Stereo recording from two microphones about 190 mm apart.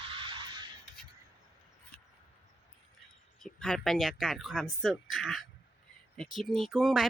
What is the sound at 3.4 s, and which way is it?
Speech, 5° left (ahead or behind).